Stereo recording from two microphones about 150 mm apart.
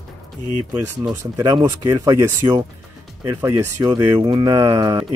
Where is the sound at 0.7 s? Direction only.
20° right (ahead or behind).